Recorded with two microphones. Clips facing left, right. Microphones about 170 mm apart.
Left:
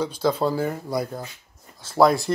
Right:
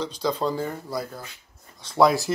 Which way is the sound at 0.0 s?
10° left (ahead or behind).